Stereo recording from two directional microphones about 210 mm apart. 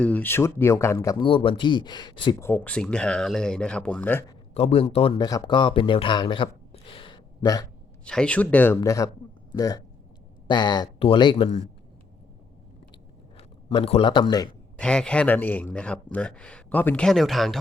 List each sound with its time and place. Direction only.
0.0 s speech: 10° left (ahead or behind)
2.5 s speech: 5° left (ahead or behind)
4.5 s speech: 30° left (ahead or behind)
8.0 s speech: 5° left (ahead or behind); by 11.6 s 25° left (ahead or behind)
13.3 s a man's voice: 25° left (ahead or behind)
14.8 s speech: 5° left (ahead or behind)